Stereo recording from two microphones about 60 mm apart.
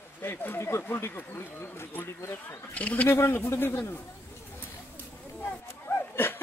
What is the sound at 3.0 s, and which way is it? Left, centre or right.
Speech, left.